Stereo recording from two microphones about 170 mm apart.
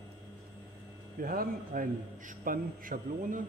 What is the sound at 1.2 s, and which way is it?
A man's voice, 55° right (ahead or behind).